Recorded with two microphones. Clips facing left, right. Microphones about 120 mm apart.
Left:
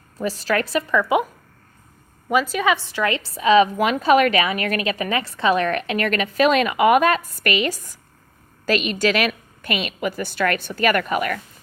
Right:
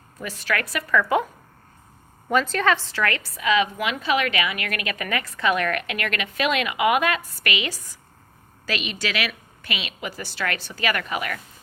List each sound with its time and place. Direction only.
0.2 s a woman's voice: 30° left (ahead or behind)
2.3 s a woman's voice: 10° left (ahead or behind); by 11.3 s 45° left (ahead or behind)